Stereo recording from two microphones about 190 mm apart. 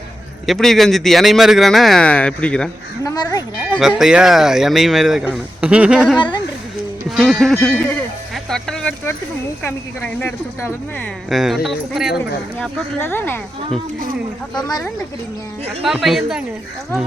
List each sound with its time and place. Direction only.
0.4 s speech: centre (ahead or behind)
3.0 s speech: 20° left (ahead or behind)
3.8 s speech: centre (ahead or behind)
6.1 s speech: 25° left (ahead or behind)
7.2 s speech: centre (ahead or behind)
8.4 s music: 5° left (ahead or behind)
9.6 s speech: 10° left (ahead or behind)
11.3 s speech: centre (ahead or behind)
12.5 s speech: 10° left (ahead or behind)
15.8 s speech: centre (ahead or behind)